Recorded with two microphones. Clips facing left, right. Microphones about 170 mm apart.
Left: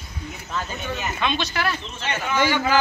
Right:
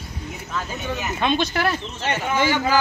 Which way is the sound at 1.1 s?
45° right (ahead or behind).